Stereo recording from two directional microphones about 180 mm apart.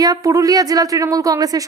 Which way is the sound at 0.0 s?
20° right (ahead or behind).